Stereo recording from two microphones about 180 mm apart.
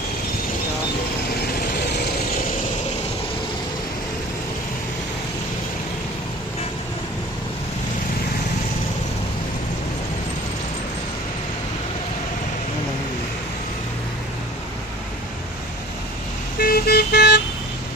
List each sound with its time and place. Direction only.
1.4 s vehicle: 60° left (ahead or behind)
16.6 s vehicle: 55° left (ahead or behind)